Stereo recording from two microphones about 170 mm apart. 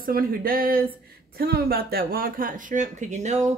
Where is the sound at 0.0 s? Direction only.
60° right (ahead or behind).